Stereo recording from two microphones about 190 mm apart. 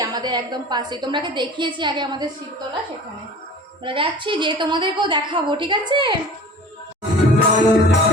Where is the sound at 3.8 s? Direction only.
25° right (ahead or behind).